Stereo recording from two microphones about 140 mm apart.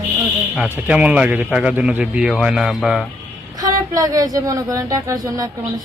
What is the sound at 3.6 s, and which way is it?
Speech, 25° right (ahead or behind).